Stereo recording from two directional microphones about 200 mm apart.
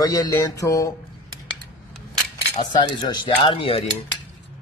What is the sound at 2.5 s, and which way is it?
A man's voice, 25° left (ahead or behind).